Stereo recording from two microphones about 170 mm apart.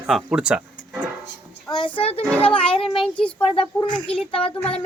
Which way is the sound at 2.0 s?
35° left (ahead or behind).